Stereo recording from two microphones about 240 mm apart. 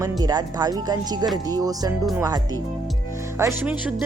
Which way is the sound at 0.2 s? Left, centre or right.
Centre.